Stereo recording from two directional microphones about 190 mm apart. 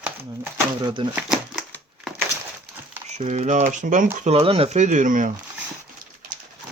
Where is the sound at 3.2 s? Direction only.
35° right (ahead or behind).